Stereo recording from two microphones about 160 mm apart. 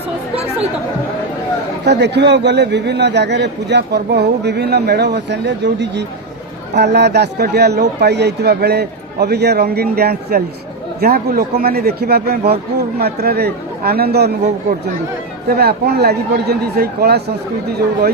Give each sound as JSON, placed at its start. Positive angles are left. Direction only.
{"t": 1.8, "sound": "a man's voice", "side_deg": -90}